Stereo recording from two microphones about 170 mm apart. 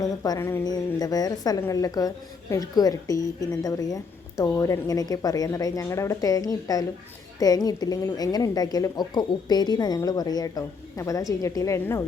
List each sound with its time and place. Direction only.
0.0 s a woman's voice: 20° left (ahead or behind)